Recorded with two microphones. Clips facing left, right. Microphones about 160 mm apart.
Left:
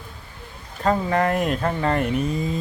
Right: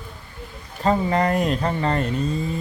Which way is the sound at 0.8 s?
Centre (ahead or behind).